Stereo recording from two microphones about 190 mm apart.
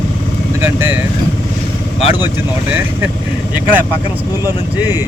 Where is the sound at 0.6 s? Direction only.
10° right (ahead or behind).